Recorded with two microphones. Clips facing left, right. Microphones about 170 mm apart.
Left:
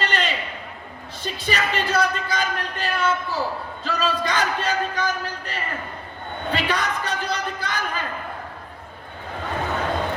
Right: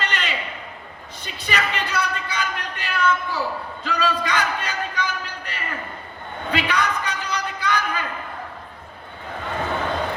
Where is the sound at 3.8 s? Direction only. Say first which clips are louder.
Even; 35° left (ahead or behind).